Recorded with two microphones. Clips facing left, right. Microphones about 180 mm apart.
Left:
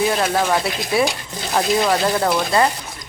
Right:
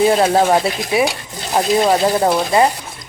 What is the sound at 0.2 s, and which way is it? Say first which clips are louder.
Speech: right 6 dB; 30° right (ahead or behind).